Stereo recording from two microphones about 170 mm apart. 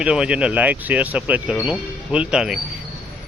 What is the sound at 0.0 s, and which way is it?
Speech, 5° right (ahead or behind).